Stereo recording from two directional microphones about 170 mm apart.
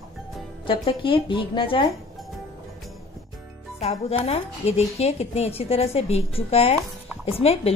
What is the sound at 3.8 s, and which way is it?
A woman's voice, 35° left (ahead or behind).